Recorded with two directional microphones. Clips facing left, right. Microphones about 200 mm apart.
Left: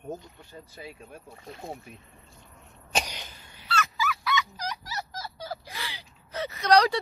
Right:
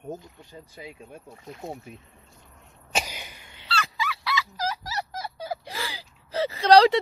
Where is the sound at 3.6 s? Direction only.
30° right (ahead or behind).